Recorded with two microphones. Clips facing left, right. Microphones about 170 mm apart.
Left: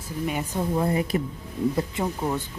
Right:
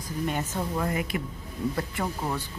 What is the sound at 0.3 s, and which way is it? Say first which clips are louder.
Speech: left 4 dB; 10° left (ahead or behind).